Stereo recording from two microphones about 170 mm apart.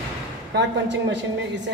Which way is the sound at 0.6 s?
90° right.